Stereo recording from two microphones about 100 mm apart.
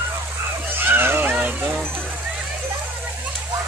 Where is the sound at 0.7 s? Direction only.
20° right (ahead or behind).